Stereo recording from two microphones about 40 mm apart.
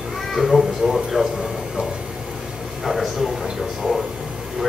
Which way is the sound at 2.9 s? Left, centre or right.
Centre.